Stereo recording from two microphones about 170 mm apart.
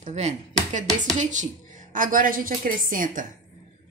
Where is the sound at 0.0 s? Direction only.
40° right (ahead or behind).